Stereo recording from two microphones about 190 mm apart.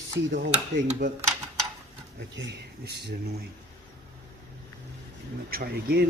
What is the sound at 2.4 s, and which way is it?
Speech, 65° right (ahead or behind).